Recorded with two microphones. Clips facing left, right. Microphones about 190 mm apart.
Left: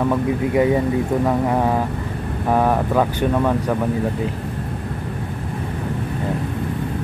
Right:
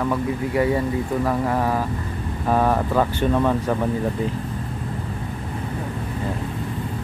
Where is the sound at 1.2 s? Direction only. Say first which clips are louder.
Left 1 dB; 20° left (ahead or behind).